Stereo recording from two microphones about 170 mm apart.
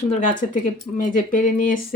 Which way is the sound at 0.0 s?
45° left (ahead or behind).